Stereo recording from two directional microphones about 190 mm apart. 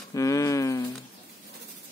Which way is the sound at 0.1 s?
20° left (ahead or behind).